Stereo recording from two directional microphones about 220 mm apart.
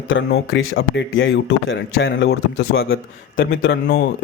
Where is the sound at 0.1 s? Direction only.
55° left (ahead or behind).